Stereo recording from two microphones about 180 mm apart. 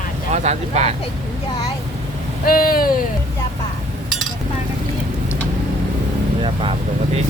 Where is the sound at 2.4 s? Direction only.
55° left (ahead or behind).